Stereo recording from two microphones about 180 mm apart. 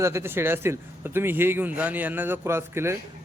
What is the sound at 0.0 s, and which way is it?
A man's voice, 15° right (ahead or behind).